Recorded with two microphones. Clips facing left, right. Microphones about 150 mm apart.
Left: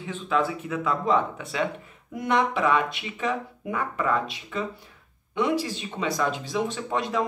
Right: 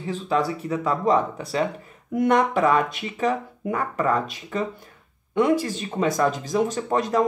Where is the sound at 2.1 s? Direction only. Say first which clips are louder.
Right 5 dB; 50° right (ahead or behind).